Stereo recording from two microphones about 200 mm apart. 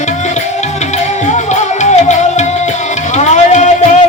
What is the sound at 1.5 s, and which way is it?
Music, 35° left (ahead or behind).